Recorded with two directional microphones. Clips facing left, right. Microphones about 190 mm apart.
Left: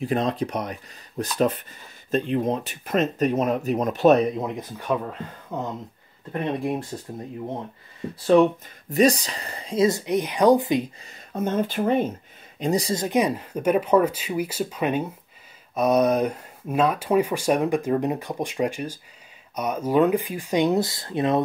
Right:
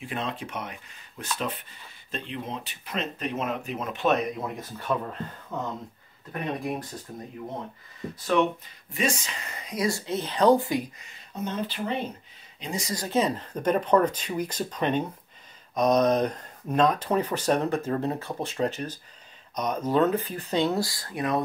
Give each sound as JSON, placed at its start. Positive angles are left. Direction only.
{"t": 0.0, "sound": "speech", "side_deg": 40}
{"t": 4.4, "sound": "speech", "side_deg": 15}
{"t": 8.3, "sound": "speech", "side_deg": 35}
{"t": 11.3, "sound": "speech", "side_deg": 50}
{"t": 12.8, "sound": "speech", "side_deg": 20}